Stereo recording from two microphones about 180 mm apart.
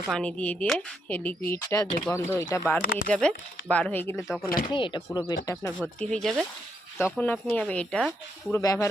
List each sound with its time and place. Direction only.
0.1 s speech: 5° left (ahead or behind)
1.6 s speech: 20° left (ahead or behind)
4.4 s speech: 55° left (ahead or behind)
4.7 s speech: 25° left (ahead or behind)
5.8 s speech: 5° left (ahead or behind)
8.5 s speech: 15° left (ahead or behind)